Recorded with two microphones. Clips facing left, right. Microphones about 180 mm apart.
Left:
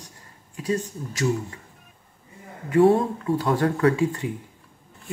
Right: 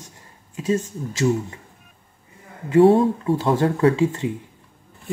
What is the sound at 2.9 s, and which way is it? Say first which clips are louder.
Speech: right 4 dB; 25° right (ahead or behind).